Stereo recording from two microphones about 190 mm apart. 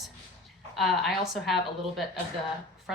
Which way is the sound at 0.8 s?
Centre (ahead or behind).